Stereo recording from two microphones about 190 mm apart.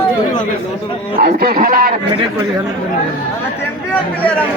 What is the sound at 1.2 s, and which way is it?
Speech, 50° right (ahead or behind).